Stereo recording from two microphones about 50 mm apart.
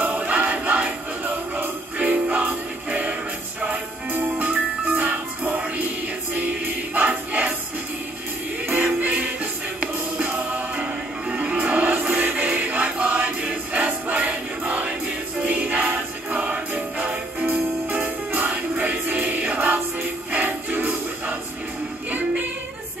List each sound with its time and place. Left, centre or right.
0.0 s music: right
8.6 s music: right
17.9 s music: right